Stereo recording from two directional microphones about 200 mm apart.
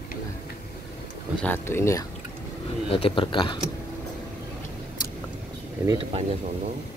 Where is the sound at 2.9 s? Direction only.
25° left (ahead or behind).